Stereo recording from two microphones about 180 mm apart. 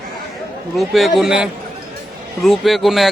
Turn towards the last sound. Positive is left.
turn(degrees=0)  # may be behind; listen again after turning